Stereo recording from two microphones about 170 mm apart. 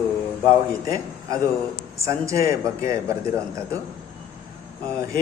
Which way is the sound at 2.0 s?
15° right (ahead or behind).